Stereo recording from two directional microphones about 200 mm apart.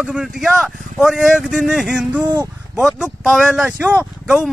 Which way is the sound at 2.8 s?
Centre (ahead or behind).